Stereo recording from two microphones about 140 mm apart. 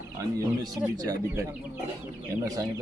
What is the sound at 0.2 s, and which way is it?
Speech, 25° right (ahead or behind).